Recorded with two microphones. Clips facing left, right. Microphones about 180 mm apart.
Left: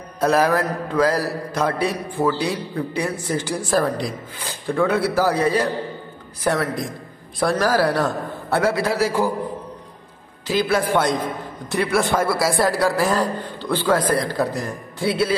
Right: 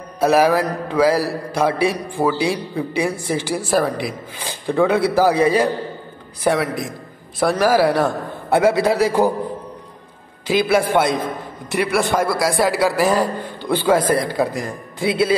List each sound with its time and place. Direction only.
0.2 s a man's voice: 10° right (ahead or behind)
10.4 s a man's voice: 10° right (ahead or behind)